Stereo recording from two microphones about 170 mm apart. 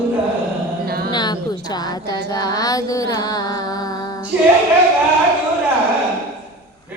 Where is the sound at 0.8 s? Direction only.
65° right (ahead or behind).